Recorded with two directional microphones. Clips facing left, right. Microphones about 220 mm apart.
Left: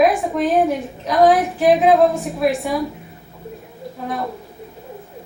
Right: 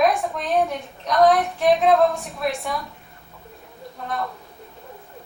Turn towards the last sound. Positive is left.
turn(degrees=5)  # may be behind; listen again after turning